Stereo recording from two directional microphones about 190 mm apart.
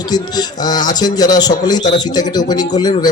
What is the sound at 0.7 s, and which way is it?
A man's voice, 20° left (ahead or behind).